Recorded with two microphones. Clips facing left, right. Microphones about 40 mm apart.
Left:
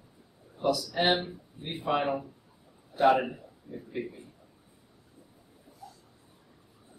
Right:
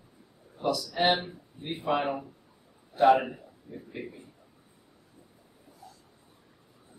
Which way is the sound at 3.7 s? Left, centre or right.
Right.